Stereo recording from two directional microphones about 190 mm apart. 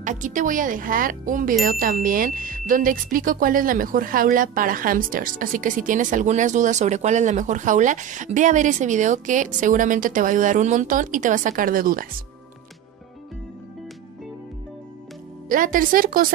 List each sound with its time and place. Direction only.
0.0 s speech: 40° right (ahead or behind)
15.4 s speech: 45° right (ahead or behind)